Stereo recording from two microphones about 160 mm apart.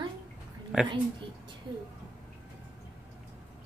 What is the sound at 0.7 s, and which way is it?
Speech, 5° right (ahead or behind).